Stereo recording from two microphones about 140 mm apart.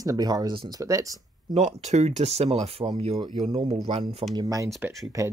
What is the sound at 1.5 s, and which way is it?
Speech, 55° right (ahead or behind).